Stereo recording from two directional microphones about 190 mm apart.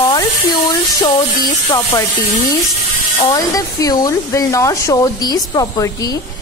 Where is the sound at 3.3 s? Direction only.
20° left (ahead or behind).